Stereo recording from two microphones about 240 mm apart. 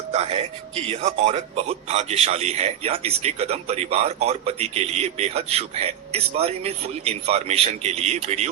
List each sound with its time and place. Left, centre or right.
0.1 s a man's voice: right